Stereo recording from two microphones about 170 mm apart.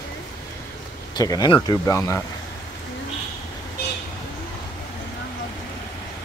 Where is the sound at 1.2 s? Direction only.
20° left (ahead or behind).